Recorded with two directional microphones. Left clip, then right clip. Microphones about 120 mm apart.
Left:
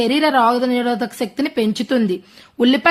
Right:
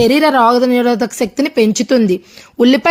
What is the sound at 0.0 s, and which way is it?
A woman's voice, 40° right (ahead or behind).